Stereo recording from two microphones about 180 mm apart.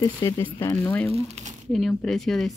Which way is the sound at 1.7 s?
Centre (ahead or behind).